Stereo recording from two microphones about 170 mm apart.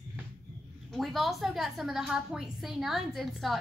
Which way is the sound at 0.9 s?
Centre (ahead or behind).